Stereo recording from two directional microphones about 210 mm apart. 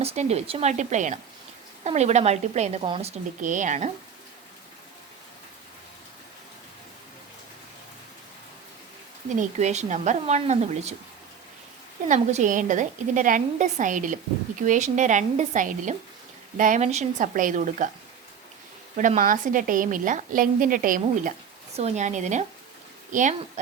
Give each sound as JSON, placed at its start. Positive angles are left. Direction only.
{"t": 0.0, "sound": "a woman's voice", "side_deg": -30}
{"t": 9.4, "sound": "a woman's voice", "side_deg": -35}
{"t": 12.0, "sound": "a woman's voice", "side_deg": -35}
{"t": 18.9, "sound": "a woman's voice", "side_deg": -35}